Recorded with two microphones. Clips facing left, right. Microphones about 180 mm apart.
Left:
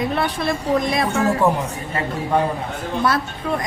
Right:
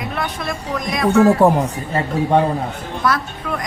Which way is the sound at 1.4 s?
35° right (ahead or behind).